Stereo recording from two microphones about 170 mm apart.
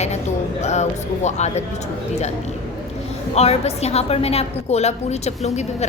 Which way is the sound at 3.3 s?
40° left (ahead or behind).